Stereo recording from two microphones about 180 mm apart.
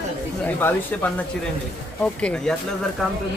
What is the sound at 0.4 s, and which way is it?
Speech, 10° left (ahead or behind).